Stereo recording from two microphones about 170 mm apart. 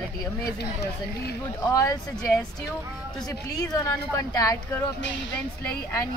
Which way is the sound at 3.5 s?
20° left (ahead or behind).